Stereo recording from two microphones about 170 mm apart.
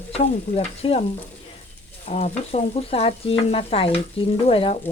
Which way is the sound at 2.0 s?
40° left (ahead or behind).